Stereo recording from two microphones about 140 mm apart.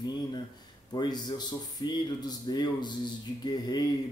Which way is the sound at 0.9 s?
30° left (ahead or behind).